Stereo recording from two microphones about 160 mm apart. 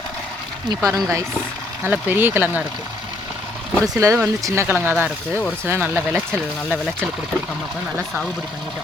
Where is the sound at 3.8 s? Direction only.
20° right (ahead or behind).